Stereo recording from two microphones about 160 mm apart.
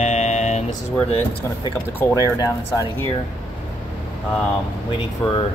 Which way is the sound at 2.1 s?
20° left (ahead or behind).